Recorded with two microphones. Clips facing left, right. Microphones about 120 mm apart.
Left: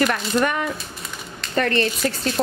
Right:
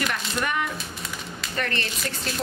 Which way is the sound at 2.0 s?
45° left (ahead or behind).